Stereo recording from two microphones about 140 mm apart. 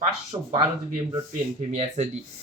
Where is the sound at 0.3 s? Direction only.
40° right (ahead or behind).